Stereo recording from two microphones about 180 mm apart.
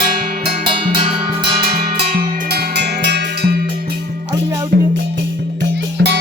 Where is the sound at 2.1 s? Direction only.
60° right (ahead or behind).